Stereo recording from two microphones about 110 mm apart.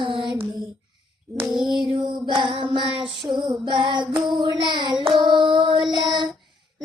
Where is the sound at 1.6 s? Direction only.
45° right (ahead or behind).